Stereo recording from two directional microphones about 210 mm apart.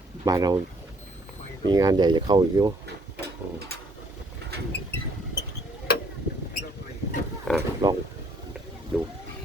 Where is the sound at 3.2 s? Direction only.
50° right (ahead or behind).